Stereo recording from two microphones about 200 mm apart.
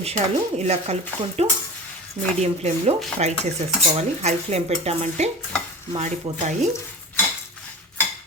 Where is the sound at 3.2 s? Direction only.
35° right (ahead or behind).